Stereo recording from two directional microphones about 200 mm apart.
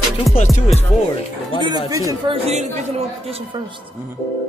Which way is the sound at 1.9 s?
15° right (ahead or behind).